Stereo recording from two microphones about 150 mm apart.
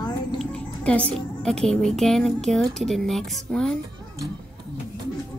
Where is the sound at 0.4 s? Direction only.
5° left (ahead or behind).